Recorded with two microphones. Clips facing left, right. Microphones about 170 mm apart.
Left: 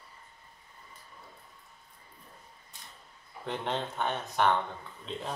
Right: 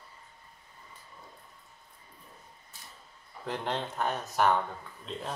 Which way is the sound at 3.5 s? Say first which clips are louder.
Even; centre (ahead or behind).